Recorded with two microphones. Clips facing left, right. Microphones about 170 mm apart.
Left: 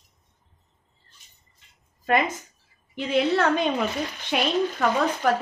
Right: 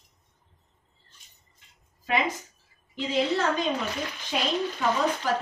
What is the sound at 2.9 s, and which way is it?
A woman's voice, 65° left (ahead or behind).